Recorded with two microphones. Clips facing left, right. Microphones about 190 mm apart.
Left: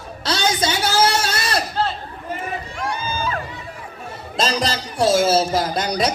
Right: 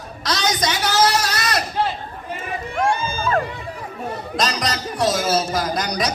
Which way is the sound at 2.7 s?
50° right (ahead or behind).